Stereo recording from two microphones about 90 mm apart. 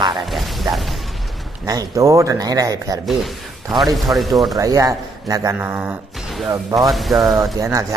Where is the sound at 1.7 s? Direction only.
40° right (ahead or behind).